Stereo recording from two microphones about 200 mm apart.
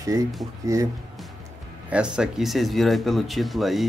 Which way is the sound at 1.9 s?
5° right (ahead or behind).